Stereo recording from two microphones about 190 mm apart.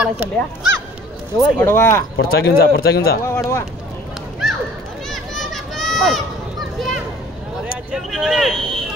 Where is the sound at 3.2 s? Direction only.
15° left (ahead or behind).